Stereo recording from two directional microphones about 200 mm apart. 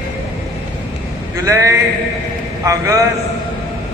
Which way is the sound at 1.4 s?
15° right (ahead or behind).